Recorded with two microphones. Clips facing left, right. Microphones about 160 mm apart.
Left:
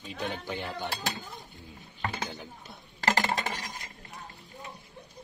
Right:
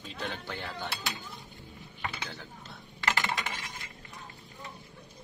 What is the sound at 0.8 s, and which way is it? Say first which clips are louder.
Speech: left 3 dB; 40° left (ahead or behind).